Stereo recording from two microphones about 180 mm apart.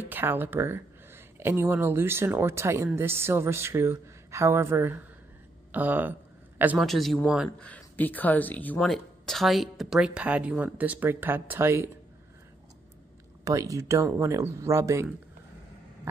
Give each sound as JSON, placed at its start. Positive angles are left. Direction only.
{"t": 0.0, "sound": "speech", "side_deg": -10}
{"t": 13.4, "sound": "speech", "side_deg": -20}